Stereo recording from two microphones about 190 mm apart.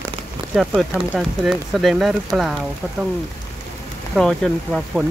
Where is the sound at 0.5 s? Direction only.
Centre (ahead or behind).